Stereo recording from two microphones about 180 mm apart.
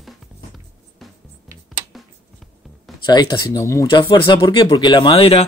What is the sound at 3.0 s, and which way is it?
Speech, 25° left (ahead or behind).